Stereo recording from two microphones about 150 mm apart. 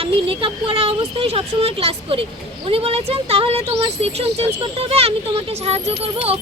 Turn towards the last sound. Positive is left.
turn(degrees=-40)  # may be behind; listen again after turning